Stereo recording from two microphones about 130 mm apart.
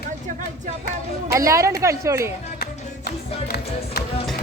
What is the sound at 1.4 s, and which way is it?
Speech, 25° right (ahead or behind).